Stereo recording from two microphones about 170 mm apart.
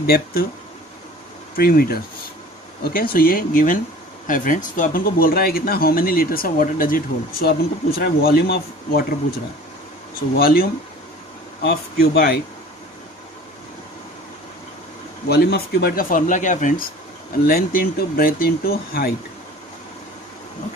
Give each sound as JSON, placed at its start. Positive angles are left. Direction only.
{"t": 0.0, "sound": "speech", "side_deg": 65}
{"t": 1.6, "sound": "speech", "side_deg": 60}
{"t": 10.3, "sound": "speech", "side_deg": 60}
{"t": 15.2, "sound": "speech", "side_deg": 70}
{"t": 17.5, "sound": "speech", "side_deg": 65}